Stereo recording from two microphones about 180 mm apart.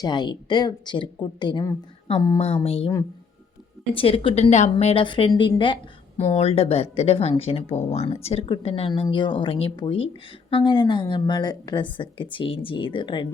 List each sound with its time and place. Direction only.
0.0 s a woman's voice: 25° left (ahead or behind)
3.9 s a woman's voice: 30° left (ahead or behind)